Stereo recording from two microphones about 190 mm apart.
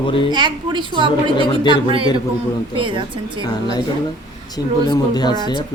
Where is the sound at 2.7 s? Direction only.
25° right (ahead or behind).